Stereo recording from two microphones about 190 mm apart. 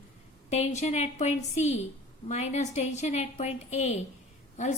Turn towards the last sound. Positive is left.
turn(degrees=40)  # may be behind; listen again after turning